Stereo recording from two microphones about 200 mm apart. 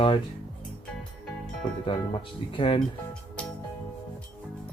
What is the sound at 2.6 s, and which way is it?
Speech, 25° left (ahead or behind).